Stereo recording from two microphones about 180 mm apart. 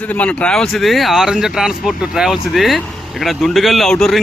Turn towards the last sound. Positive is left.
turn(degrees=0)  # may be behind; listen again after turning